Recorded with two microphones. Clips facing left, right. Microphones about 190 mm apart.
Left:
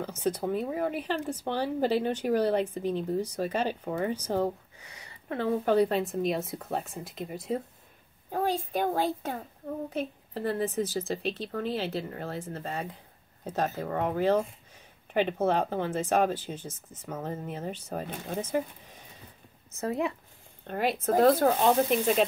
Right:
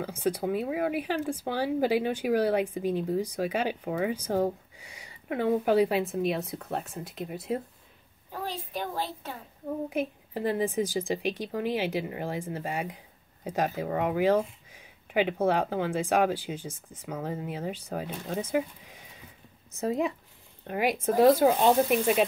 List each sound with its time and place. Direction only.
0.0 s a woman's voice: 10° right (ahead or behind)
8.3 s a child's voice: 50° left (ahead or behind)
9.8 s speech: 10° right (ahead or behind)